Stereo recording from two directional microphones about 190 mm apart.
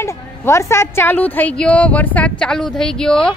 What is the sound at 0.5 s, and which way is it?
A woman's voice, 15° left (ahead or behind).